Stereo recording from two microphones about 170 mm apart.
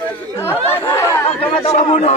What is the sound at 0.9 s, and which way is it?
Chatter, 20° left (ahead or behind).